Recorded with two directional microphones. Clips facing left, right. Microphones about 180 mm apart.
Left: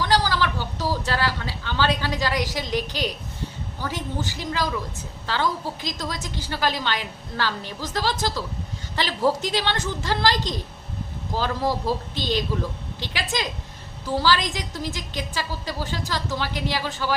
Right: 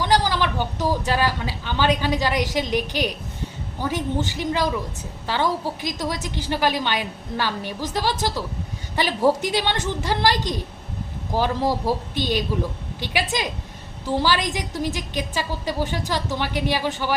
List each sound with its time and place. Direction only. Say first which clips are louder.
0.0 s a woman's voice: right 1 dB; 15° right (ahead or behind)